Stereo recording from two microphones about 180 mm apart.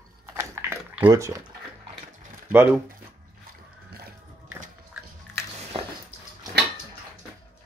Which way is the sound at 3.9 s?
60° right (ahead or behind).